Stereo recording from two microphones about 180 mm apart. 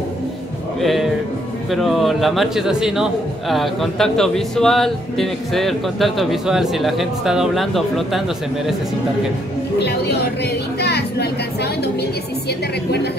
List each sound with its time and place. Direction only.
0.7 s music: centre (ahead or behind)
1.7 s a man's voice: centre (ahead or behind)
9.8 s speech: 65° left (ahead or behind)